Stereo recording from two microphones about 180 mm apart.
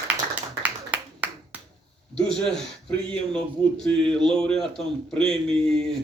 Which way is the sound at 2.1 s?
5° left (ahead or behind).